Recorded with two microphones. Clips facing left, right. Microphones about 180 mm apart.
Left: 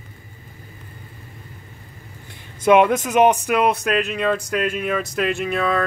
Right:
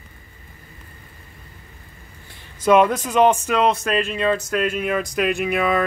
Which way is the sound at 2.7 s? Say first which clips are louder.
Left 1 dB; 20° left (ahead or behind).